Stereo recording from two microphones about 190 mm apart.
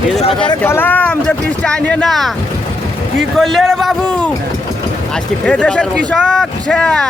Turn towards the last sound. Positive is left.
turn(degrees=5)  # may be behind; listen again after turning